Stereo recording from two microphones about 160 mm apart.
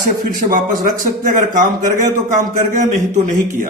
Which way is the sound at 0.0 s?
60° right (ahead or behind).